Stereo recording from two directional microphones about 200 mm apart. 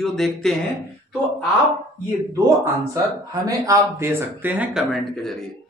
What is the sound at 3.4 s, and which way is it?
A woman's voice, 15° right (ahead or behind).